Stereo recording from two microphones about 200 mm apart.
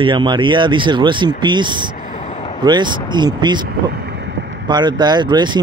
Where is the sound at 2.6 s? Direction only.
20° right (ahead or behind).